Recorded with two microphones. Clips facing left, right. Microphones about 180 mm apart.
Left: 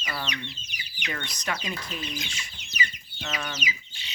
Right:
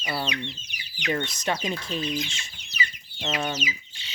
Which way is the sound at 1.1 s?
25° right (ahead or behind).